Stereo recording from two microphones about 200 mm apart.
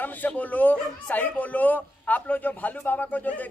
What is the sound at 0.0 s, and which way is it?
Speech, 10° left (ahead or behind).